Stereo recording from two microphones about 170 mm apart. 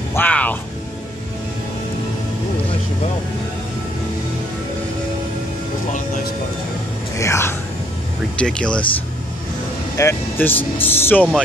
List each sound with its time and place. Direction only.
0.1 s music: 10° left (ahead or behind)
7.2 s whispering: 15° left (ahead or behind)
8.4 s speech: 5° left (ahead or behind)
9.9 s speech: 15° left (ahead or behind)